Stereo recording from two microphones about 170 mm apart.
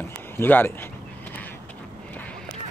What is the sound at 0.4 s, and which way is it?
Speech, 10° left (ahead or behind).